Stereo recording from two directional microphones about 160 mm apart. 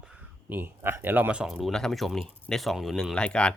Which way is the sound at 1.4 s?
Centre (ahead or behind).